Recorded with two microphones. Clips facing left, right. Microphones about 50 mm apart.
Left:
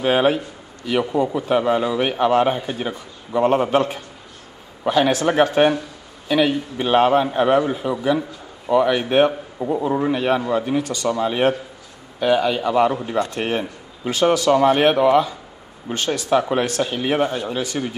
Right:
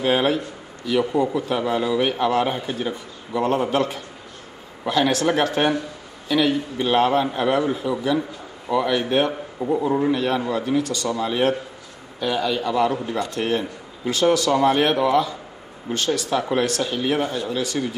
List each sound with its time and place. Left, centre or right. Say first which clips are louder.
0.0 s a man's voice: left 2 dB; left
9.6 s a man's voice: even; centre; by 17.9 s left